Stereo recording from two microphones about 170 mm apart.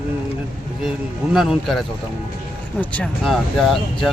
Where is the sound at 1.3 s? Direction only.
Centre (ahead or behind).